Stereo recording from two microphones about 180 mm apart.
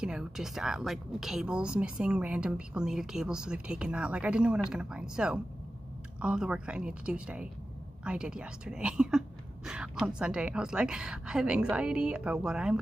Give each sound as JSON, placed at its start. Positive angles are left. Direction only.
{"t": 0.0, "sound": "a woman's voice", "side_deg": -5}